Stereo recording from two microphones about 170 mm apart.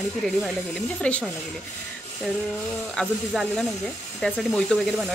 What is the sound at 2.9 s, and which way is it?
Speech, 5° left (ahead or behind).